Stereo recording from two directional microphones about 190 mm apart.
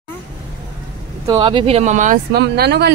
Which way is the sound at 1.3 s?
25° right (ahead or behind).